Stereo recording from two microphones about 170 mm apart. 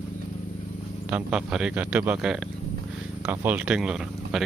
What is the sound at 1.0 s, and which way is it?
Speech, 5° right (ahead or behind).